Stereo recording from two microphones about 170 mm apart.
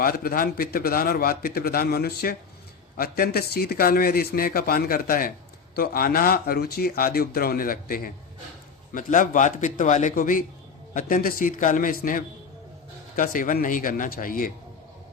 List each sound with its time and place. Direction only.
0.0 s a man's voice: 60° left (ahead or behind)